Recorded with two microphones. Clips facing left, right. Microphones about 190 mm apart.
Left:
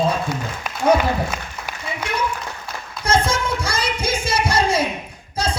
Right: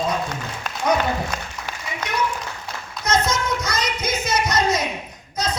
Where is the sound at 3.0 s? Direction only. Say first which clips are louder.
Left 2 dB; 30° left (ahead or behind).